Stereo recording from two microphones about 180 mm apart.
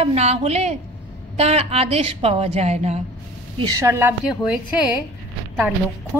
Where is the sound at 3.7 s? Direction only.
15° right (ahead or behind).